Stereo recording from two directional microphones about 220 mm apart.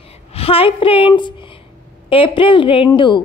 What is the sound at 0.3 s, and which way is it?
A woman's voice, 25° left (ahead or behind).